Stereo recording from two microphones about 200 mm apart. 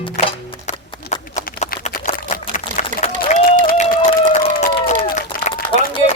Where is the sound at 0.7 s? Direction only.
35° left (ahead or behind).